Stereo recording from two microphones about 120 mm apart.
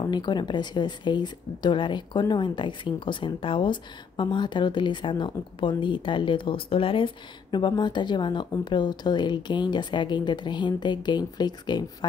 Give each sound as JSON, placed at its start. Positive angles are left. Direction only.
{"t": 0.0, "sound": "speech", "side_deg": 35}
{"t": 7.5, "sound": "speech", "side_deg": 40}